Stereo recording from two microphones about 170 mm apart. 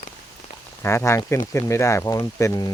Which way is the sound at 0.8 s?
15° left (ahead or behind).